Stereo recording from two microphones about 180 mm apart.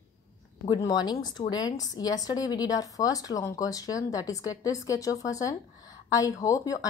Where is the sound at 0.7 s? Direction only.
20° left (ahead or behind).